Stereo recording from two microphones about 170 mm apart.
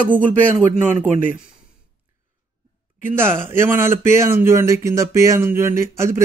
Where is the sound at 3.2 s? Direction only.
15° right (ahead or behind).